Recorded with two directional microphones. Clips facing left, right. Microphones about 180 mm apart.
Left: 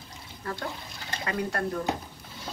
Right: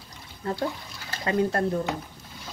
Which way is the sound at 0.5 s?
25° right (ahead or behind).